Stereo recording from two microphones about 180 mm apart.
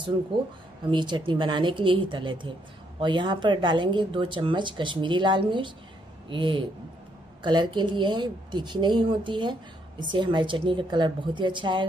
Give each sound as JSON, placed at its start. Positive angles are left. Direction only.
{"t": 0.8, "sound": "speech", "side_deg": -25}